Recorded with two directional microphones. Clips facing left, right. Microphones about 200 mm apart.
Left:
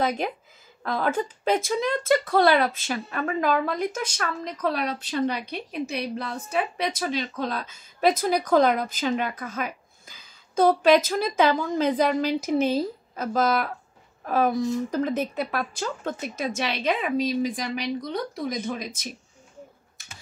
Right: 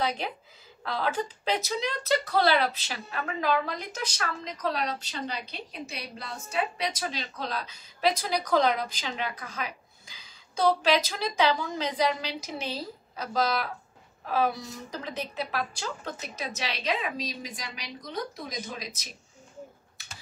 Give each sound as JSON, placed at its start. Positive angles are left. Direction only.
{"t": 0.8, "sound": "a woman's voice", "side_deg": 50}